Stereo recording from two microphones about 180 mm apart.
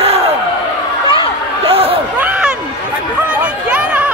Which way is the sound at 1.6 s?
30° right (ahead or behind).